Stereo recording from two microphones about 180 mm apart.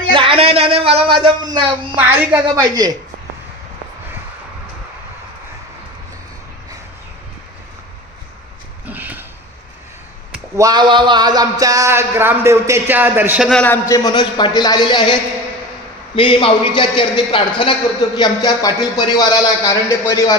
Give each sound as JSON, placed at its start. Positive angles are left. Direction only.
{"t": 0.1, "sound": "speech", "side_deg": -30}
{"t": 2.0, "sound": "speech", "side_deg": -10}
{"t": 2.6, "sound": "a woman's voice", "side_deg": -20}
{"t": 8.9, "sound": "a sound", "side_deg": -10}
{"t": 10.6, "sound": "speech", "side_deg": -25}